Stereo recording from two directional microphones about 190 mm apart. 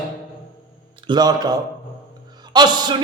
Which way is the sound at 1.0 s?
20° right (ahead or behind).